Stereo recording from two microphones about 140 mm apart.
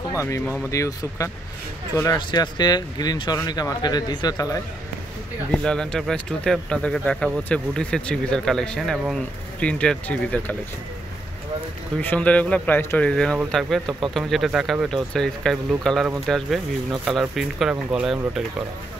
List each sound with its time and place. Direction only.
0.1 s speech: 20° left (ahead or behind)
5.5 s speech: 5° left (ahead or behind)
12.0 s speech: 10° left (ahead or behind)
13.8 s speech: 35° right (ahead or behind)
14.1 s speech: centre (ahead or behind)